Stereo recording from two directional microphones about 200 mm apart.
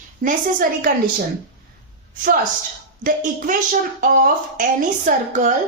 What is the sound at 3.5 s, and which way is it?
A woman's voice, 40° right (ahead or behind).